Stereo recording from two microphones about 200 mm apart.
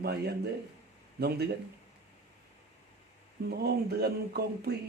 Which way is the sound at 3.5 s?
50° right (ahead or behind).